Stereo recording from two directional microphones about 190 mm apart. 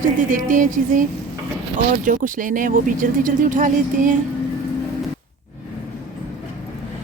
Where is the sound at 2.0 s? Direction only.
45° right (ahead or behind).